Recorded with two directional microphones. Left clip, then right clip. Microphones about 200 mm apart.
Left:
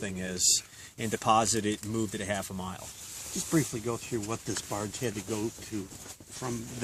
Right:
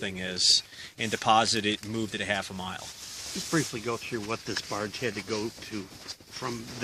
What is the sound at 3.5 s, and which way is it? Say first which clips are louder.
Speech: right 1 dB; 35° left (ahead or behind).